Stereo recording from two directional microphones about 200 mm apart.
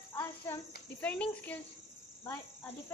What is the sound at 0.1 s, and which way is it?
Cricket, 15° left (ahead or behind).